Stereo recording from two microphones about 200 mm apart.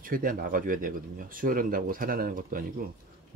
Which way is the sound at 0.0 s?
45° right (ahead or behind).